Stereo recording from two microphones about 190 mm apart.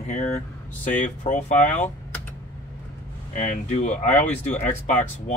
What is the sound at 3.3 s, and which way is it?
Speech, 40° left (ahead or behind).